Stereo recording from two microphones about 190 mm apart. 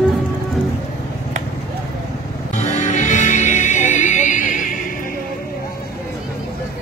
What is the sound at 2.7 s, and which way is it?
Music, 40° left (ahead or behind).